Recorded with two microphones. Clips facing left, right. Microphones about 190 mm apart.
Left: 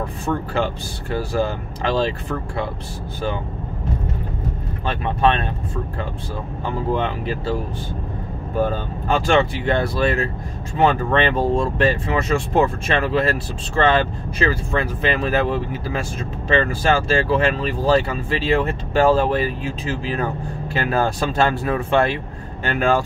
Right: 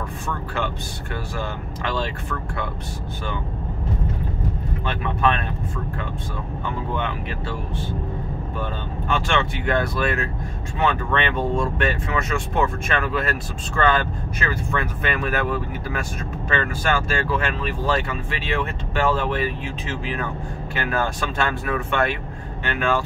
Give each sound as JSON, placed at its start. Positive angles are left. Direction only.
{"t": 1.1, "sound": "speech", "side_deg": 35}
{"t": 4.8, "sound": "speech", "side_deg": 30}
{"t": 6.6, "sound": "speech", "side_deg": 35}
{"t": 8.5, "sound": "speech", "side_deg": 40}